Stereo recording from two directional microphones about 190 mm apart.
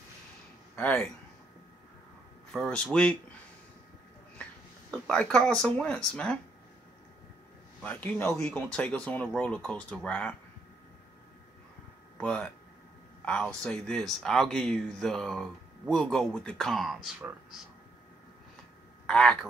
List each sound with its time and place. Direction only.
0.7 s speech: 5° left (ahead or behind)
2.5 s speech: 5° left (ahead or behind)
5.0 s speech: 5° left (ahead or behind)
7.8 s speech: 10° left (ahead or behind)
12.2 s speech: 5° left (ahead or behind)
19.0 s speech: 5° left (ahead or behind)